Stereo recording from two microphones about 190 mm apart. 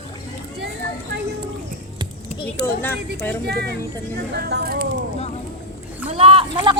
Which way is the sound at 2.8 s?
10° left (ahead or behind).